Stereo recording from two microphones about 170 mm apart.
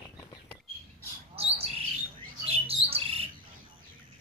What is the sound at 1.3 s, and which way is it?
Bird, 35° right (ahead or behind).